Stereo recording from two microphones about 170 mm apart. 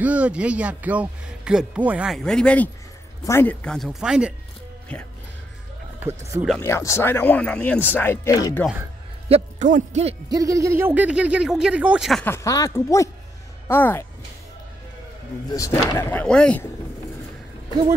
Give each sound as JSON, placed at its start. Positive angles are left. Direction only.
{"t": 0.0, "sound": "speech", "side_deg": -5}
{"t": 5.9, "sound": "speech", "side_deg": -15}
{"t": 6.6, "sound": "speech", "side_deg": 15}
{"t": 9.3, "sound": "speech", "side_deg": -45}
{"t": 10.3, "sound": "speech", "side_deg": -20}
{"t": 12.3, "sound": "speech", "side_deg": 20}
{"t": 15.5, "sound": "speech", "side_deg": 20}